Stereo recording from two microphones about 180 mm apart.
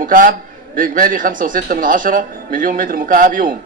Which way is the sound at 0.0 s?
50° right (ahead or behind).